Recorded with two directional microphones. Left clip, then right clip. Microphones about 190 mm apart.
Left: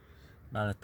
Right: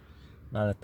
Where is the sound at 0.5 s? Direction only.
25° left (ahead or behind).